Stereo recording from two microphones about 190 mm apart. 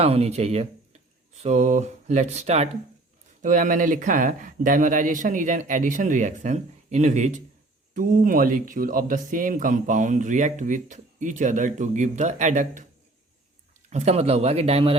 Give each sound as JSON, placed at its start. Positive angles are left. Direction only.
{"t": 0.0, "sound": "speech", "side_deg": -35}
{"t": 13.9, "sound": "speech", "side_deg": -35}